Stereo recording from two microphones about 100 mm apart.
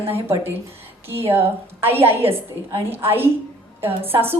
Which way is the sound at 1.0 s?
25° right (ahead or behind).